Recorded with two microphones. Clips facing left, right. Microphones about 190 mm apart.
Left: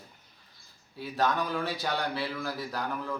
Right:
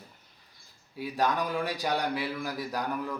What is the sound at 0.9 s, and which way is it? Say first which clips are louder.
Speech: even; 15° right (ahead or behind).